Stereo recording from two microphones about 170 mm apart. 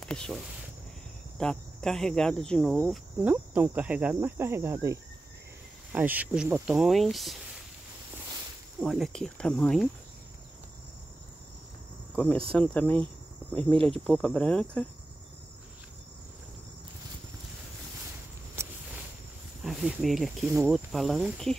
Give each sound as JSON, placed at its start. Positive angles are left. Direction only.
{"t": 0.0, "sound": "speech", "side_deg": 5}
{"t": 1.4, "sound": "speech", "side_deg": 5}
{"t": 2.9, "sound": "cricket", "side_deg": -10}
{"t": 5.9, "sound": "speech", "side_deg": -10}
{"t": 8.7, "sound": "speech", "side_deg": 0}
{"t": 12.5, "sound": "speech", "side_deg": 5}
{"t": 13.7, "sound": "speech", "side_deg": -30}
{"t": 14.0, "sound": "speech", "side_deg": 5}
{"t": 18.6, "sound": "a sound", "side_deg": -15}
{"t": 19.6, "sound": "speech", "side_deg": 0}
{"t": 20.4, "sound": "cricket", "side_deg": -15}
{"t": 20.7, "sound": "speech", "side_deg": 0}